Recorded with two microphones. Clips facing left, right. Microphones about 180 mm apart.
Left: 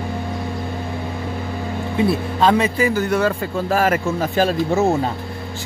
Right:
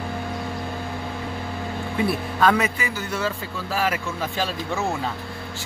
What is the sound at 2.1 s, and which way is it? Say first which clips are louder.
Speech: left 3 dB; 25° left (ahead or behind).